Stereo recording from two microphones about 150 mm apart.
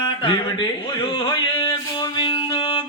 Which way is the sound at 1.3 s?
35° left (ahead or behind).